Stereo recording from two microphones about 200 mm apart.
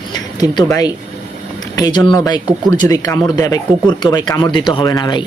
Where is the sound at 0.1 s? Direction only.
20° left (ahead or behind).